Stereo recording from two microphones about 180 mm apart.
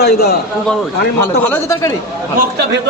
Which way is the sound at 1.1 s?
15° left (ahead or behind).